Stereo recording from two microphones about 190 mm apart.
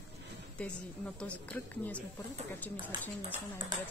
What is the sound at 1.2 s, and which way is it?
Speech, 5° left (ahead or behind).